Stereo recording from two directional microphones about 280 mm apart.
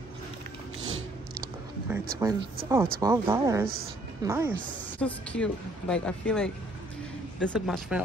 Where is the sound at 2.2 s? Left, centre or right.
Centre.